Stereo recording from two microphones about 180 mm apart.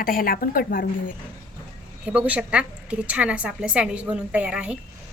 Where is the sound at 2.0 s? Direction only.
10° right (ahead or behind).